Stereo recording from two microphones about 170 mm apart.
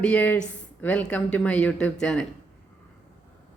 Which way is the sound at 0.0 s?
10° left (ahead or behind).